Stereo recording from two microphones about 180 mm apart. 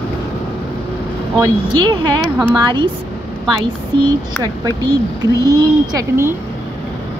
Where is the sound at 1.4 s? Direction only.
25° right (ahead or behind).